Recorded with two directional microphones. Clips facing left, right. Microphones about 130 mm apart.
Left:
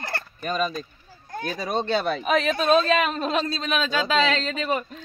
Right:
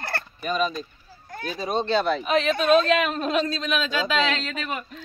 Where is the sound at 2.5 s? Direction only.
35° left (ahead or behind).